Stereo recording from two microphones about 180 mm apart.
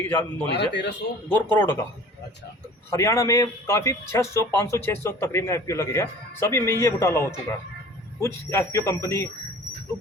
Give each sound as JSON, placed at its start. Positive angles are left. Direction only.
{"t": 0.1, "sound": "a man's voice", "side_deg": 10}
{"t": 0.5, "sound": "speech", "side_deg": 75}
{"t": 1.3, "sound": "a man's voice", "side_deg": 10}
{"t": 2.9, "sound": "a man's voice", "side_deg": 15}